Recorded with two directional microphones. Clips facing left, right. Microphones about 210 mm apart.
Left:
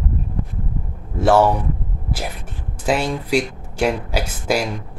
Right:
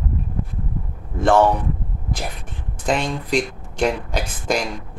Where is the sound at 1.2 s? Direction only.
5° left (ahead or behind).